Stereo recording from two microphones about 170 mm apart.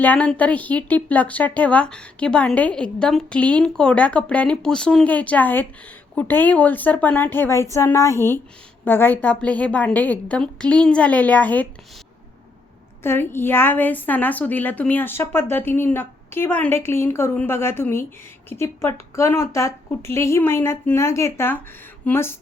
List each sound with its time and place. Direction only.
0.0 s a woman's voice: 10° left (ahead or behind)
13.0 s a woman's voice: 15° left (ahead or behind)